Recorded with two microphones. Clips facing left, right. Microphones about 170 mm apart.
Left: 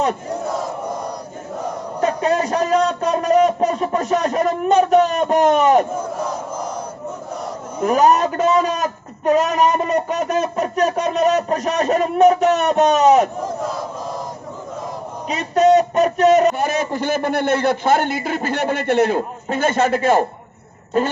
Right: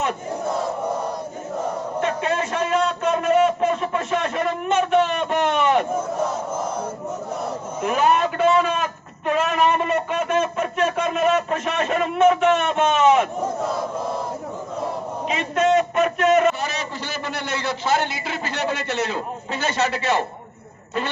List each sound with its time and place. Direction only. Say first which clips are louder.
2.0 s a sound: left 6 dB; 40° left (ahead or behind)
7.8 s a man's voice: left 5 dB; 40° left (ahead or behind)
15.3 s a man's voice: left 6 dB; 40° left (ahead or behind)